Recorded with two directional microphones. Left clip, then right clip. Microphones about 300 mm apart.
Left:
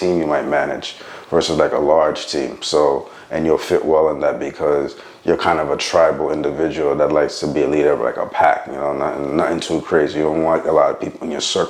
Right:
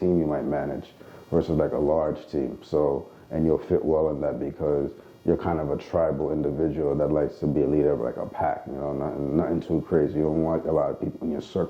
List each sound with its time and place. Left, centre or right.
0.0 s speech: centre